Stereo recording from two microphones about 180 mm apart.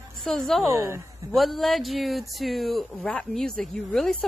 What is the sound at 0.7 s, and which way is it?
Speech, 15° right (ahead or behind).